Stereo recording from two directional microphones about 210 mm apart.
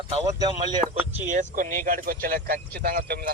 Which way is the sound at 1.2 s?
35° right (ahead or behind).